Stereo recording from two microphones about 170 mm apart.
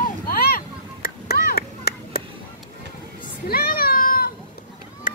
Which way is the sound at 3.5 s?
65° left (ahead or behind).